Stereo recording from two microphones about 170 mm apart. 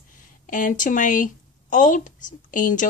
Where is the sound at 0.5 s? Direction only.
50° left (ahead or behind).